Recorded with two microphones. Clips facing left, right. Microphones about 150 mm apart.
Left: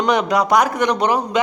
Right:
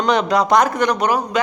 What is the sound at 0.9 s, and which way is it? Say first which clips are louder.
Speech: left 1 dB; 25° left (ahead or behind).